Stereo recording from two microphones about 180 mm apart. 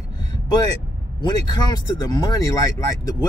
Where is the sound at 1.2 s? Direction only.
25° left (ahead or behind).